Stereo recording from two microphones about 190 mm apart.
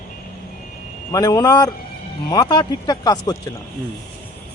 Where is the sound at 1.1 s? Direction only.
20° left (ahead or behind).